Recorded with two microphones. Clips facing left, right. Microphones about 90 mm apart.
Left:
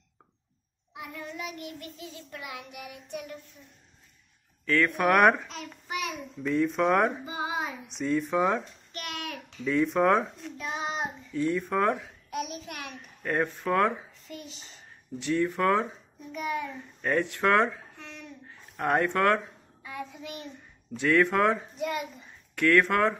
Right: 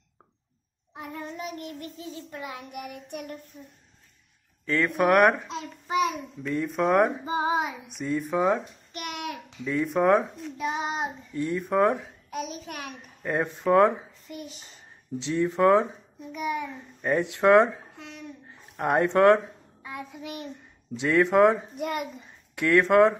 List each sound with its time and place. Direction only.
0.9 s child singing: 35° right (ahead or behind)
2.8 s child singing: 55° right (ahead or behind)
3.6 s a woman's voice: 35° right (ahead or behind)
4.6 s speech: 15° right (ahead or behind)
5.5 s a child's voice: 20° right (ahead or behind)
6.4 s a child's voice: centre (ahead or behind)
7.2 s speech: 30° right (ahead or behind)
7.9 s a child's voice: 5° right (ahead or behind)
9.7 s a child's voice: 5° right (ahead or behind)
12.3 s a sound: 30° right (ahead or behind)
13.2 s a child's voice: 15° right (ahead or behind)
20.9 s speech: 15° right (ahead or behind)
21.7 s child singing: 50° right (ahead or behind)
22.6 s speech: 20° right (ahead or behind)